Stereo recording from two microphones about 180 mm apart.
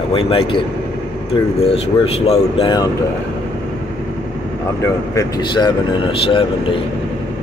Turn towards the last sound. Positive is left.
turn(degrees=30)  # may be behind; listen again after turning